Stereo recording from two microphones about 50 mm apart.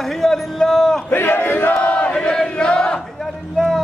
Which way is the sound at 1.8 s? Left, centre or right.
Left.